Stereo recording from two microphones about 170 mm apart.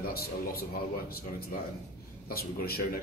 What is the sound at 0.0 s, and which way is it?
Speech, 60° left (ahead or behind).